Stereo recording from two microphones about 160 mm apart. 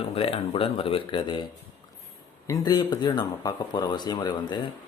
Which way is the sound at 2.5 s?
25° left (ahead or behind).